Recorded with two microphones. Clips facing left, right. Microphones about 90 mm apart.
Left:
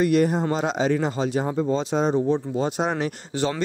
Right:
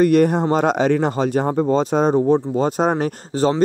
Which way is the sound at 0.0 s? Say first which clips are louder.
Right 5 dB; 50° right (ahead or behind).